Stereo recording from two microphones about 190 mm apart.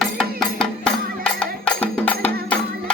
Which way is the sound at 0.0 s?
Centre (ahead or behind).